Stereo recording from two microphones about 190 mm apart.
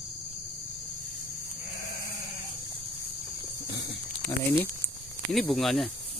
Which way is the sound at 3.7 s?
65° left (ahead or behind).